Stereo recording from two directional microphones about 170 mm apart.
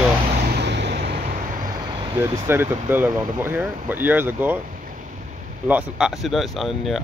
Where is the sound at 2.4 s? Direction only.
15° right (ahead or behind).